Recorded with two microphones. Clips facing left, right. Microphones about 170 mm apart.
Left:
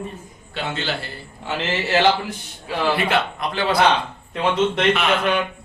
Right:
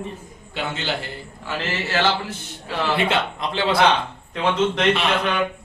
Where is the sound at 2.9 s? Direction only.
25° right (ahead or behind).